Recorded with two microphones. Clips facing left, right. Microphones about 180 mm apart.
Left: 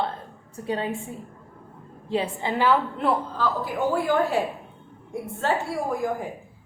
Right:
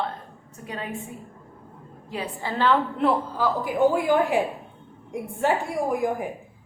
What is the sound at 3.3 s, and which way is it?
A woman's voice, 15° right (ahead or behind).